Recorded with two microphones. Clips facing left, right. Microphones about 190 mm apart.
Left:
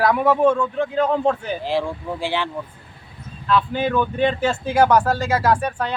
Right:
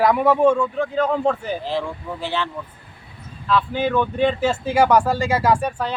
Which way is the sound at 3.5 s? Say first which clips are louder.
Even; 5° right (ahead or behind).